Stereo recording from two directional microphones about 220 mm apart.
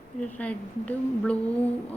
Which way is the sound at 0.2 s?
5° left (ahead or behind).